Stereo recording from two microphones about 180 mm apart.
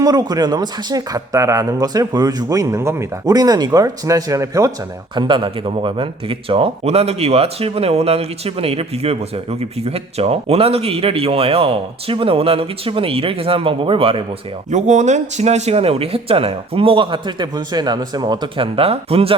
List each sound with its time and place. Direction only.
0.0 s speech: 20° right (ahead or behind)
14.7 s speech: 40° right (ahead or behind)